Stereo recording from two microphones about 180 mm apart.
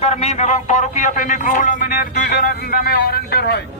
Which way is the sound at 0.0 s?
35° left (ahead or behind).